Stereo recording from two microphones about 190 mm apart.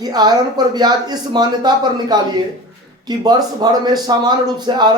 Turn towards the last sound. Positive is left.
turn(degrees=-20)  # may be behind; listen again after turning